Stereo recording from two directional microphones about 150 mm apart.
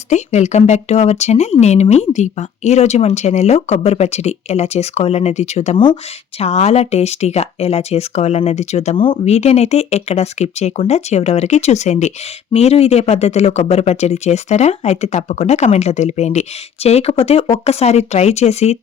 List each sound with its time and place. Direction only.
0.1 s speech: 50° left (ahead or behind)
5.7 s speech: 30° left (ahead or behind)
6.4 s speech: 45° left (ahead or behind)
9.0 s speech: 35° left (ahead or behind)
9.3 s speech: 45° left (ahead or behind)